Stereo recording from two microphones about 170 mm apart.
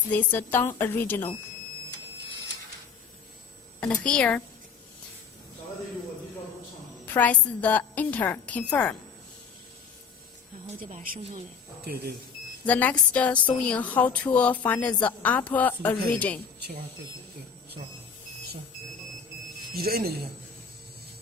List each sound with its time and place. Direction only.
0.1 s a woman's voice: 10° left (ahead or behind)
3.8 s a woman's voice: 5° left (ahead or behind)
7.0 s a woman's voice: 10° left (ahead or behind)
12.6 s a woman's voice: 10° left (ahead or behind)
19.7 s speech: 65° right (ahead or behind)